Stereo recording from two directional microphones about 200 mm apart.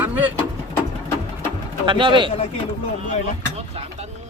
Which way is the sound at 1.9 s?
25° right (ahead or behind).